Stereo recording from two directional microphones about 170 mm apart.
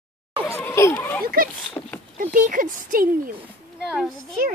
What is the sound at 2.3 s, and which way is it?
Speech, 50° right (ahead or behind).